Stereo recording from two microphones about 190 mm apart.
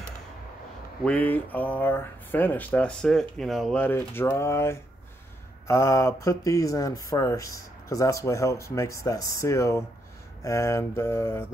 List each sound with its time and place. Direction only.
1.0 s speech: 10° left (ahead or behind)